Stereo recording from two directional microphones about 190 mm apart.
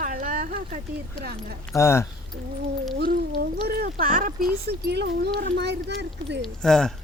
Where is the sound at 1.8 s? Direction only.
15° left (ahead or behind).